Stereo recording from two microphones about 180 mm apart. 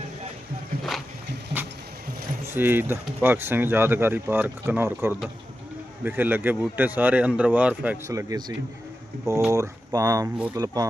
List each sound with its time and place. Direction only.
2.5 s speech: 10° right (ahead or behind)
8.1 s speech: 20° right (ahead or behind)